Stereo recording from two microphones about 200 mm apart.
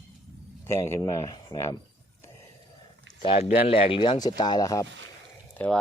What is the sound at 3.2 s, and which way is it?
Speech, 30° left (ahead or behind).